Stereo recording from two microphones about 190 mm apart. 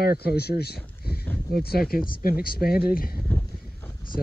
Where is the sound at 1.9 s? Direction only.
50° left (ahead or behind).